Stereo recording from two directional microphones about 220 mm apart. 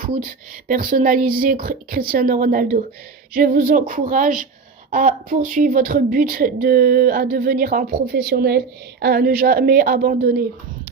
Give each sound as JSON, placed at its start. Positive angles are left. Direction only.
{"t": 0.0, "sound": "speech", "side_deg": -40}